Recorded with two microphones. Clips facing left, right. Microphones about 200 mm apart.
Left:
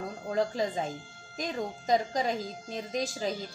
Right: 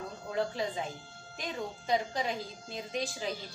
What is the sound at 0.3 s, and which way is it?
A woman's voice, 40° left (ahead or behind).